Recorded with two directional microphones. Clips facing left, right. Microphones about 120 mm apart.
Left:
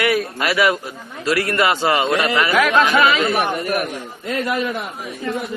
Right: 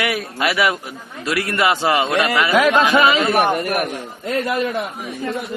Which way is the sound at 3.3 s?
55° right (ahead or behind).